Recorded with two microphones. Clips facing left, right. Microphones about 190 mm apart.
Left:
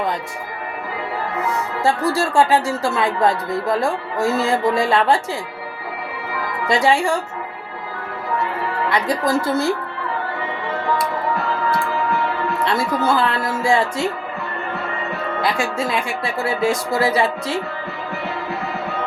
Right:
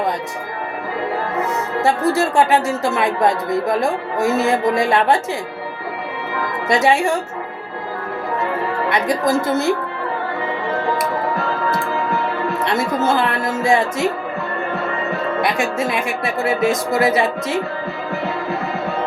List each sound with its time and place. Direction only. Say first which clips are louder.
1.8 s speech: right 2 dB; 20° right (ahead or behind)
6.7 s speech: right 1 dB; 20° right (ahead or behind)
8.9 s speech: right 1 dB; 20° right (ahead or behind)
12.6 s speech: right 1 dB; 20° right (ahead or behind)
15.4 s speech: even; 20° right (ahead or behind)